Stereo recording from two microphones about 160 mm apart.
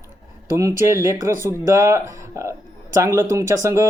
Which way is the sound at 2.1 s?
20° right (ahead or behind).